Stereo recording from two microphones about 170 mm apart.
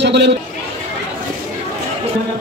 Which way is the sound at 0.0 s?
90° right.